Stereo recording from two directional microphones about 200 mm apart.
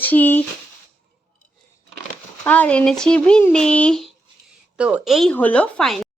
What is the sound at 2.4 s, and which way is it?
Speech, 5° left (ahead or behind).